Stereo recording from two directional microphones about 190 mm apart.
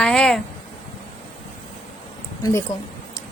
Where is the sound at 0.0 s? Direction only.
5° left (ahead or behind).